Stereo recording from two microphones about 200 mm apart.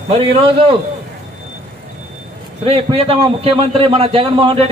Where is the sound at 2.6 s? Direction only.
30° right (ahead or behind).